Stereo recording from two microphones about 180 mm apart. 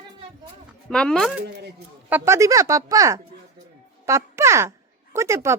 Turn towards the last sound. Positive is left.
turn(degrees=-15)  # may be behind; listen again after turning